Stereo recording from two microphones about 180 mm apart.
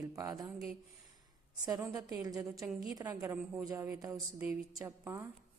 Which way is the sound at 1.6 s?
20° right (ahead or behind).